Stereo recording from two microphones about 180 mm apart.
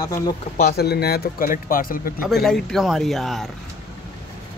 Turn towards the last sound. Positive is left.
turn(degrees=0)  # may be behind; listen again after turning